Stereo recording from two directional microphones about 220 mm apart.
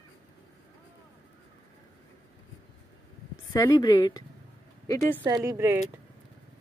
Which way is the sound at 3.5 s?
15° left (ahead or behind).